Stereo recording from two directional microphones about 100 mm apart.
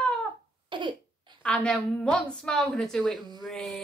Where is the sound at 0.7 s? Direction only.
50° right (ahead or behind).